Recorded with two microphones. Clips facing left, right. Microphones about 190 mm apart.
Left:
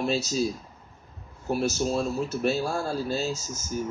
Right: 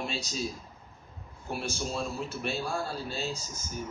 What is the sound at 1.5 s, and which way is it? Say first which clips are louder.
A man's voice: left 8 dB; 40° left (ahead or behind).